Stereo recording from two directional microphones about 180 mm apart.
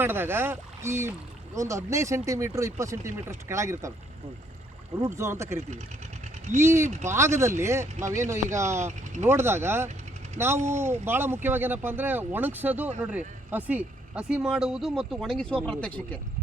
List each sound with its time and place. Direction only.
0.0 s speech: 10° right (ahead or behind)
4.9 s speech: 15° right (ahead or behind); by 15.9 s 5° left (ahead or behind)